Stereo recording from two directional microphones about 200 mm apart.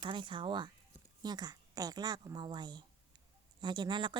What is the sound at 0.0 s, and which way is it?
A woman's voice, 25° right (ahead or behind).